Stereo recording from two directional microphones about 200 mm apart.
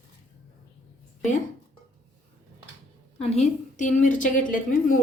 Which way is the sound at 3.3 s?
35° left (ahead or behind).